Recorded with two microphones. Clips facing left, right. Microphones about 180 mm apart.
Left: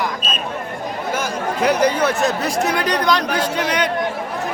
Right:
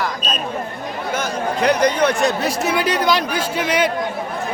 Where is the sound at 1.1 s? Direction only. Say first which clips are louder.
Right 2 dB; 10° left (ahead or behind); by 3.8 s 5° right (ahead or behind).